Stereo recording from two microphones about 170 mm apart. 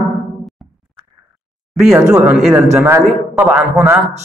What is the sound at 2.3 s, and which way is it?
Speech, centre (ahead or behind).